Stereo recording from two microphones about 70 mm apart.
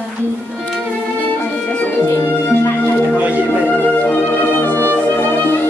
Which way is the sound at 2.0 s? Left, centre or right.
Left.